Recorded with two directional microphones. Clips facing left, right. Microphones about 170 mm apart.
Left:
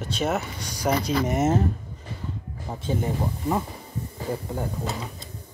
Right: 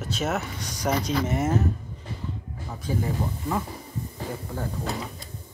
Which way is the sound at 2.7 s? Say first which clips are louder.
Left 2 dB; 25° left (ahead or behind).